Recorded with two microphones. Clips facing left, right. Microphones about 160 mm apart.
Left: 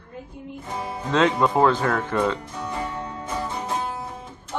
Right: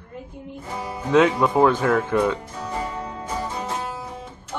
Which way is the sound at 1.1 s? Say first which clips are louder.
Right 3 dB; 10° right (ahead or behind).